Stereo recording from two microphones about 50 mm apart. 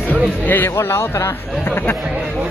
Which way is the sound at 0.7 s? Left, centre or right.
Left.